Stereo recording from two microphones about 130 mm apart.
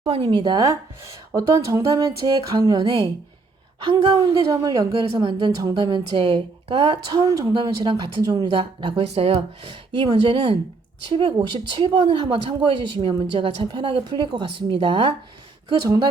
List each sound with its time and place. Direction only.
0.1 s a woman's voice: 40° right (ahead or behind)
1.4 s music: 25° right (ahead or behind)
2.6 s a woman's voice: 30° right (ahead or behind)
3.8 s a woman's voice: 45° right (ahead or behind)
4.4 s a woman's voice: 25° right (ahead or behind); by 7.0 s 45° right (ahead or behind)
7.1 s music: 25° right (ahead or behind)
7.5 s a woman's voice: 40° right (ahead or behind)
9.0 s a woman's voice: 50° right (ahead or behind)